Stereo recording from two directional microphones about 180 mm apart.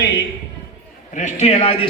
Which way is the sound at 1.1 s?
40° left (ahead or behind).